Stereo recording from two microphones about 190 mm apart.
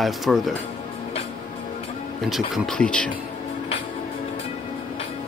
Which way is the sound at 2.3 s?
Centre (ahead or behind).